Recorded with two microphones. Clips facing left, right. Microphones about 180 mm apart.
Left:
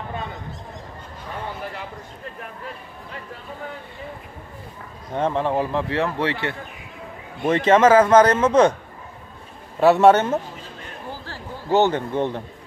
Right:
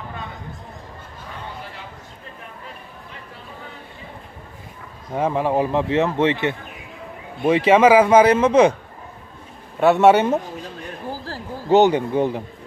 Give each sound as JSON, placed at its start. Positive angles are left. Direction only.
{"t": 5.1, "sound": "a man's voice", "side_deg": -10}
{"t": 7.4, "sound": "speech", "side_deg": -10}
{"t": 9.8, "sound": "speech", "side_deg": 0}
{"t": 10.1, "sound": "speech", "side_deg": -15}
{"t": 11.1, "sound": "a sound", "side_deg": -35}
{"t": 11.7, "sound": "speech", "side_deg": -15}